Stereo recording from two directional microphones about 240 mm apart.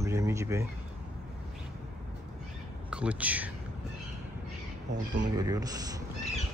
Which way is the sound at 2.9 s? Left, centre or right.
Centre.